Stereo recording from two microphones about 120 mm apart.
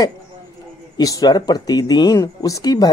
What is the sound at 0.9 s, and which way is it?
A woman's voice, 30° left (ahead or behind).